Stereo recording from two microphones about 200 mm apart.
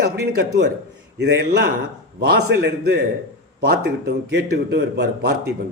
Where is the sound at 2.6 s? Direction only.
55° right (ahead or behind).